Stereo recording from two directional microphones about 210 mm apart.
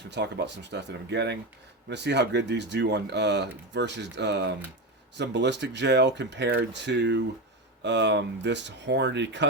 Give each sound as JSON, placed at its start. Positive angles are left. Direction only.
{"t": 0.1, "sound": "speech", "side_deg": -55}